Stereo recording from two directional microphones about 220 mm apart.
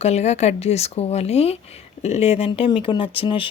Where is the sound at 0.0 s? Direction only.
30° left (ahead or behind).